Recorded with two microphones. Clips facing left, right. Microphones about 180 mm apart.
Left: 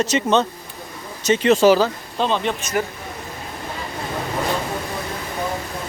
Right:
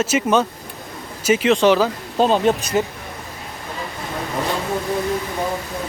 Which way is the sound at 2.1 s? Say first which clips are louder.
Right 6 dB; 40° right (ahead or behind).